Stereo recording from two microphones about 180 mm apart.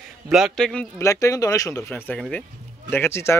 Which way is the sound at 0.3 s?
Centre (ahead or behind).